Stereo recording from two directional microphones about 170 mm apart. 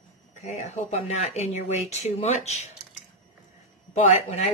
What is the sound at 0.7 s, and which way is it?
Speech, 40° left (ahead or behind).